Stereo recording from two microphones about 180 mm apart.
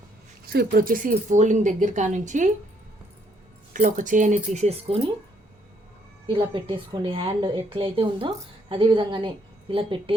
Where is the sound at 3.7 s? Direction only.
45° right (ahead or behind).